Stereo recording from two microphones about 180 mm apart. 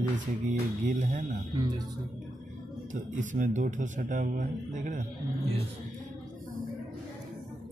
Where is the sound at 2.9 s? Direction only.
45° right (ahead or behind).